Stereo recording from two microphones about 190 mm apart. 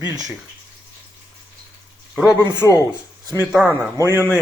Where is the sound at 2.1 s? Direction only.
5° right (ahead or behind).